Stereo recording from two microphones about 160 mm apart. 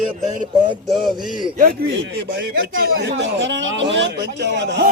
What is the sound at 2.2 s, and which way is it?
Speech, 80° right.